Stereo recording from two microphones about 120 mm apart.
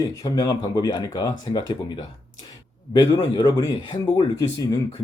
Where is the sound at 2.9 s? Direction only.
35° left (ahead or behind).